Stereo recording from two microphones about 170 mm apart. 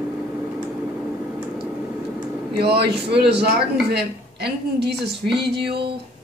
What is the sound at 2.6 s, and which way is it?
Speech, 75° right (ahead or behind).